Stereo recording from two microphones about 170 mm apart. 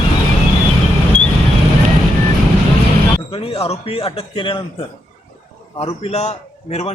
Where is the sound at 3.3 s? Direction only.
35° left (ahead or behind).